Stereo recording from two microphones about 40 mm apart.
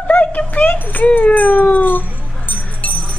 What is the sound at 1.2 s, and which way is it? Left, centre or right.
Cat, left.